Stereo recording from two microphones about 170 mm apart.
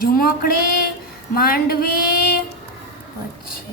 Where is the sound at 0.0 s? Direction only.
65° left (ahead or behind).